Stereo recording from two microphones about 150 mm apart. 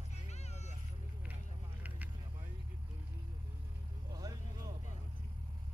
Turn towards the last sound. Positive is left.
turn(degrees=-25)  # may be behind; listen again after turning